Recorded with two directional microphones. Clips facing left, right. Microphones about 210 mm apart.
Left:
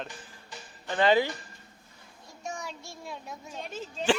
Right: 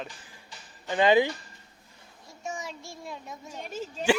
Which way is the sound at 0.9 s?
15° right (ahead or behind).